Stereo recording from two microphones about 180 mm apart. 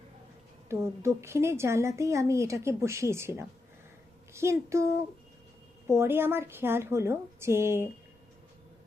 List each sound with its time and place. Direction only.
0.7 s a woman's voice: 15° right (ahead or behind)
5.9 s a woman's voice: 15° right (ahead or behind)